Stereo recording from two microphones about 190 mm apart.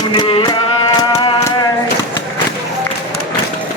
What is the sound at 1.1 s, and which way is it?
Music, 20° left (ahead or behind).